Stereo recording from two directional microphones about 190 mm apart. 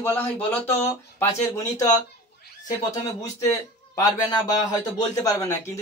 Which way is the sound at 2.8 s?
15° left (ahead or behind).